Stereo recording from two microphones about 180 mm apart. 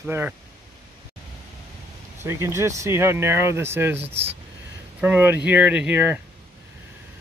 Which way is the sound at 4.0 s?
35° right (ahead or behind).